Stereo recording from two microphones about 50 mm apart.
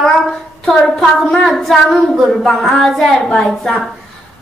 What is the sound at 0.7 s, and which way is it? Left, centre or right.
A woman's voice, centre.